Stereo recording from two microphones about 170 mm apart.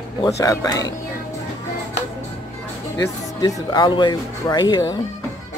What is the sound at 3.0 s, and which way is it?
Speech, 20° left (ahead or behind).